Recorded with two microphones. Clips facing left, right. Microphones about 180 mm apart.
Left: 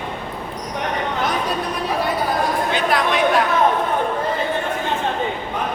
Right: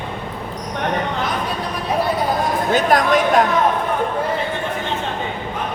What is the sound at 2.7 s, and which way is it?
Speech, 45° right (ahead or behind).